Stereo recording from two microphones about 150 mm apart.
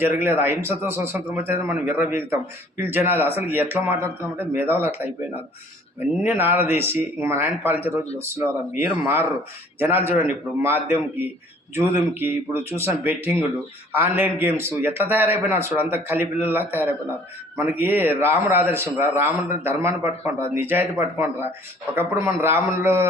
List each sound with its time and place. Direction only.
0.0 s speech: 15° right (ahead or behind)
6.0 s speech: 15° right (ahead or behind)